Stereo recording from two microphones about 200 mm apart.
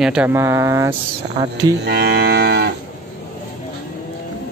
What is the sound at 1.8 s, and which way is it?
Cattle, 55° right (ahead or behind).